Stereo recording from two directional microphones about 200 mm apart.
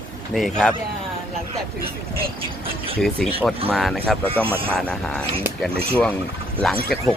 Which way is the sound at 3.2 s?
Centre (ahead or behind).